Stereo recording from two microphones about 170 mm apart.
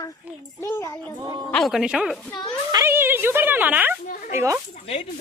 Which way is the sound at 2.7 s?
15° right (ahead or behind).